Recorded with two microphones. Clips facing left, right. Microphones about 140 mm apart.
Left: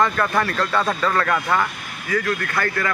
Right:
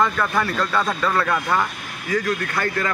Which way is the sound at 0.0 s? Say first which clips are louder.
Left 1 dB; 5° right (ahead or behind).